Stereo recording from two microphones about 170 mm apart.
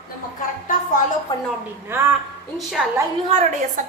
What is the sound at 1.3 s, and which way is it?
Speech, 25° left (ahead or behind).